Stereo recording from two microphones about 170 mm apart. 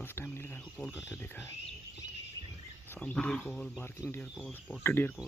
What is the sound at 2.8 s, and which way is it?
Speech, 10° left (ahead or behind).